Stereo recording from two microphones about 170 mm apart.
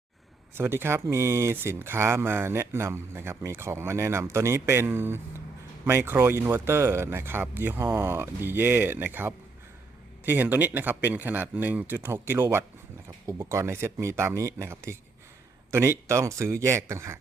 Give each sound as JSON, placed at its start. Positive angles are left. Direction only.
{"t": 0.5, "sound": "speech", "side_deg": -15}